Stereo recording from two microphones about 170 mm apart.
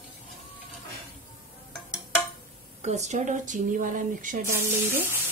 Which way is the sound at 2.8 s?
40° right (ahead or behind).